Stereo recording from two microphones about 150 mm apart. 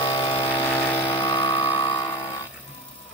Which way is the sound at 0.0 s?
30° left (ahead or behind).